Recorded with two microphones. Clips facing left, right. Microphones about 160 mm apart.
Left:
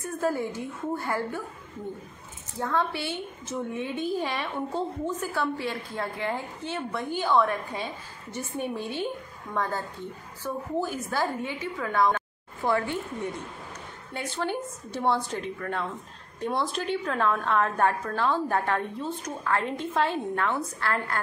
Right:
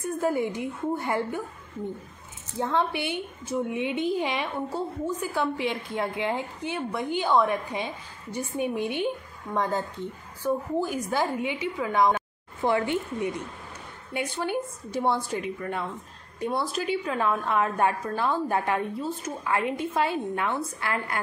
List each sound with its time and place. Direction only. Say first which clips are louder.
0.2 s a woman's voice: right 1 dB; 15° right (ahead or behind)
2.6 s a woman's voice: right 2 dB; 20° right (ahead or behind)